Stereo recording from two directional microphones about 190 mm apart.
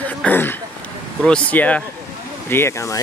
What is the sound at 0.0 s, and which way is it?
Throat clearing, 10° left (ahead or behind).